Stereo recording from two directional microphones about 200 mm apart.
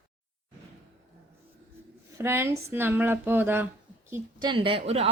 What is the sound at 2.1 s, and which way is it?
Speech, 15° right (ahead or behind).